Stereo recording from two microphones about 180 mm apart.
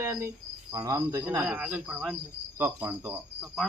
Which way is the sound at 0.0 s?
15° right (ahead or behind).